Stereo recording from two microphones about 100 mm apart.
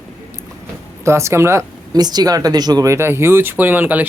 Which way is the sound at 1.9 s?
40° right (ahead or behind).